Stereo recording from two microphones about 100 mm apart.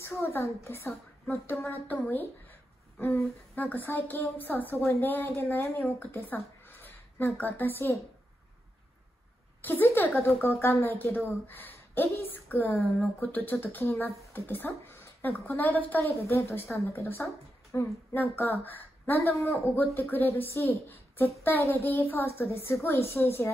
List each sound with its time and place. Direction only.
0.0 s a woman's voice: 20° left (ahead or behind)
9.6 s a woman's voice: 20° left (ahead or behind)